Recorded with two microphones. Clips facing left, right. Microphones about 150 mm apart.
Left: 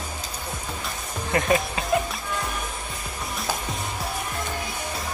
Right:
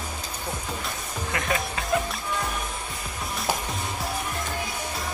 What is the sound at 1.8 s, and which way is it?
Music, 20° left (ahead or behind).